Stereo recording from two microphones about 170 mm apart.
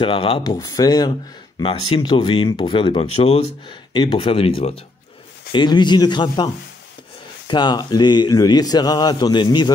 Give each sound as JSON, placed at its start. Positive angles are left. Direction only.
{"t": 0.0, "sound": "a man's voice", "side_deg": 30}